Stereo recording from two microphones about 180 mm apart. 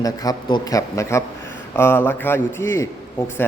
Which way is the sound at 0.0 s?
20° left (ahead or behind).